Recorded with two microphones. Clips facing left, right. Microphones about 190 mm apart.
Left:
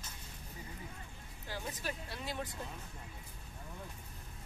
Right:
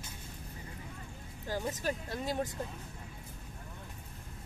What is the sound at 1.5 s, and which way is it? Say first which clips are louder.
Speech: right 7 dB; 45° right (ahead or behind).